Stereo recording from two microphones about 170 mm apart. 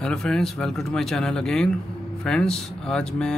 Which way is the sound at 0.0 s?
5° left (ahead or behind).